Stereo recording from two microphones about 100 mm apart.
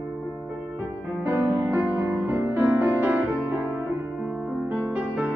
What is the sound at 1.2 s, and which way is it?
Music, 20° right (ahead or behind).